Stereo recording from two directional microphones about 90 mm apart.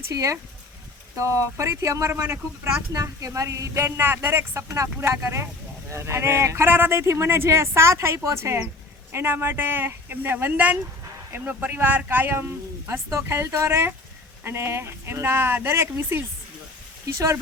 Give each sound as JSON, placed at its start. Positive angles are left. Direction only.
{"t": 0.1, "sound": "speech", "side_deg": -40}